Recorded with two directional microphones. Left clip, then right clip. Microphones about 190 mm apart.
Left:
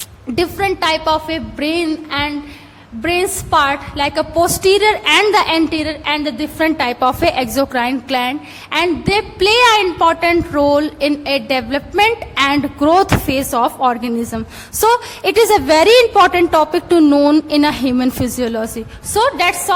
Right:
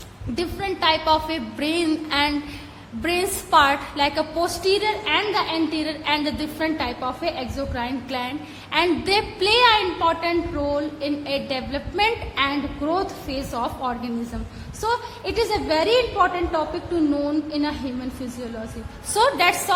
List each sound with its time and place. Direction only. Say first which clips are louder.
0.3 s a woman's voice: left 10 dB; 30° left (ahead or behind)
12.8 s speech: left 14 dB; 45° left (ahead or behind)
19.1 s a woman's voice: left 4 dB; 25° left (ahead or behind)